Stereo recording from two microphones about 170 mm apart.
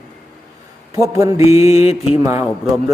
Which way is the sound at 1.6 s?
40° left (ahead or behind).